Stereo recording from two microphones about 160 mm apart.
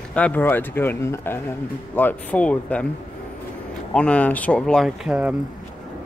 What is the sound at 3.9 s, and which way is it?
Speech, 5° left (ahead or behind).